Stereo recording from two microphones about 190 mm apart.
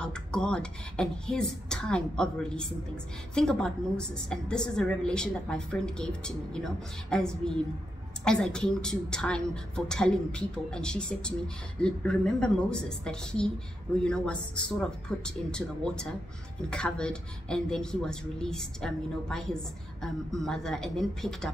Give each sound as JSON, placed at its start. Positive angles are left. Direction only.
{"t": 0.0, "sound": "a woman's voice", "side_deg": 5}